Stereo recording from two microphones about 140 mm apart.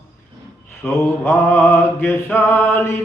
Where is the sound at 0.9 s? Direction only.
15° left (ahead or behind).